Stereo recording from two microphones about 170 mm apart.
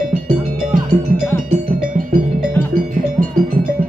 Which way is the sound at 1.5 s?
55° right (ahead or behind).